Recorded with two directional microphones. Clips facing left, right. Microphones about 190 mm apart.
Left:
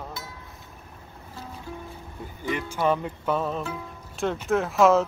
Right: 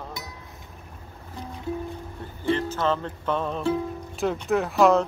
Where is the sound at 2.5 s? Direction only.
10° left (ahead or behind).